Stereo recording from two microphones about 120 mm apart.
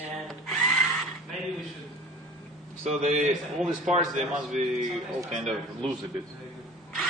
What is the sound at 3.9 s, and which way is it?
Speech, 90° right.